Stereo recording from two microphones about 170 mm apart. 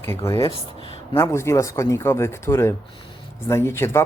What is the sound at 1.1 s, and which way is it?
A man's voice, 15° left (ahead or behind).